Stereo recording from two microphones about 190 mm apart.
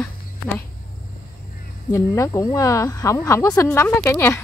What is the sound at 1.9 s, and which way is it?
Speech, 15° left (ahead or behind).